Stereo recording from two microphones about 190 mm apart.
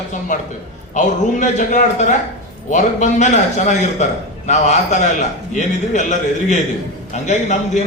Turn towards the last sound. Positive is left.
turn(degrees=40)  # may be behind; listen again after turning